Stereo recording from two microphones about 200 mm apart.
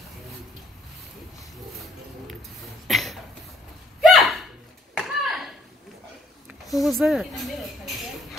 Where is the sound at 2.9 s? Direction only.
Centre (ahead or behind).